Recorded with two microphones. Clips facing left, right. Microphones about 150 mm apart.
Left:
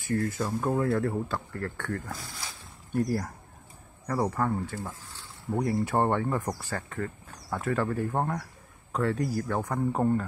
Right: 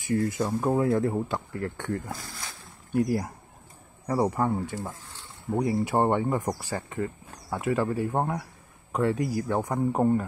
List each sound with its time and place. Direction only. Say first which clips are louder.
0.0 s speech: right 3 dB; 10° right (ahead or behind)